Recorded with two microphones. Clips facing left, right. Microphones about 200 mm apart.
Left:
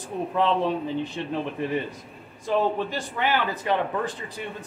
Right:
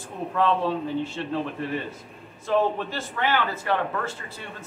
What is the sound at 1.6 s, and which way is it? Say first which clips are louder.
A man's voice: left 2 dB; 15° left (ahead or behind).